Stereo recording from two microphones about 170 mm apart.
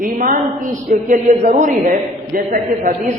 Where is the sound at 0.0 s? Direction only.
55° right (ahead or behind).